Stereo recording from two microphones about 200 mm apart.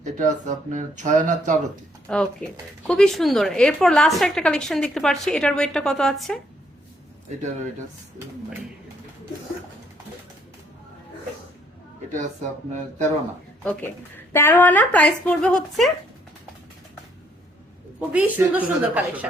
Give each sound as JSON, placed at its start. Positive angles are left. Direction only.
{"t": 0.0, "sound": "speech", "side_deg": -40}
{"t": 2.1, "sound": "a woman's voice", "side_deg": 5}
{"t": 12.1, "sound": "speech", "side_deg": -35}
{"t": 14.3, "sound": "a woman's voice", "side_deg": 10}
{"t": 18.1, "sound": "a woman's voice", "side_deg": -10}